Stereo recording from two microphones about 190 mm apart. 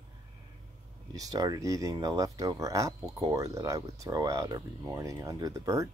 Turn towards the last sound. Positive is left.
turn(degrees=-15)  # may be behind; listen again after turning